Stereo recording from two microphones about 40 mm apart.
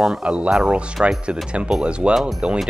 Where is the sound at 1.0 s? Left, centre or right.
Right.